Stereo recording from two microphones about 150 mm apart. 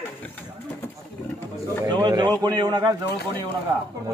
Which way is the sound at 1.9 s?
30° right (ahead or behind).